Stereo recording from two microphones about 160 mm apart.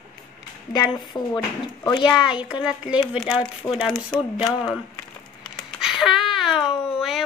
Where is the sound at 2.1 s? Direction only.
5° right (ahead or behind).